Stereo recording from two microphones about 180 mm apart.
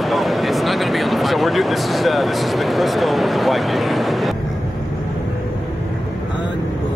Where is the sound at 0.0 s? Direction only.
Centre (ahead or behind).